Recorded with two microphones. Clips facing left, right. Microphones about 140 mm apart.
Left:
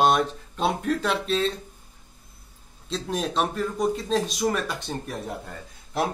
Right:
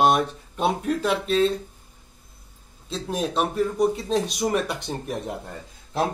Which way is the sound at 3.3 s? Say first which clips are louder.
Right 3 dB; 15° right (ahead or behind).